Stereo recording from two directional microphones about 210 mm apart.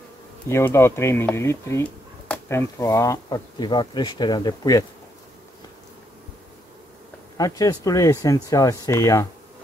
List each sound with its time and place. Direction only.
0.5 s speech: 10° left (ahead or behind)
7.3 s speech: 15° left (ahead or behind)